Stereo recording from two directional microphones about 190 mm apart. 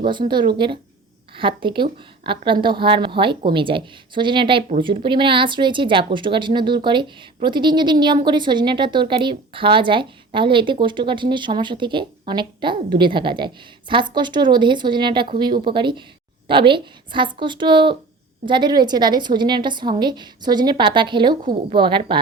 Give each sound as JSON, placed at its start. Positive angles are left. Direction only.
{"t": 0.0, "sound": "a woman's voice", "side_deg": -25}